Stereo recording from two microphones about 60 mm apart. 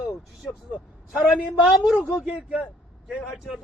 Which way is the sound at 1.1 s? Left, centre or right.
Centre.